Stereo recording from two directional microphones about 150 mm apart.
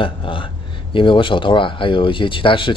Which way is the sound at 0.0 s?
35° left (ahead or behind).